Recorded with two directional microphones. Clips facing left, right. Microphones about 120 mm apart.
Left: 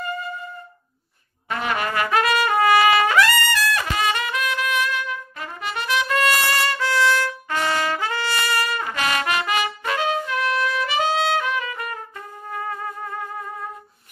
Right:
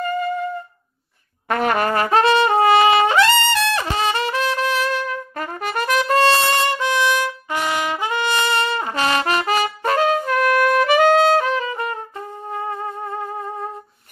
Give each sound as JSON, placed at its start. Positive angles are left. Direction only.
{"t": 1.5, "sound": "trumpet", "side_deg": -50}